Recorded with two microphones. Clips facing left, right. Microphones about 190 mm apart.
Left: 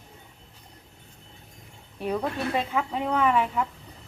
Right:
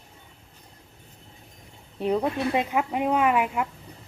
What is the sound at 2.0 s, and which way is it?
Speech, 20° right (ahead or behind).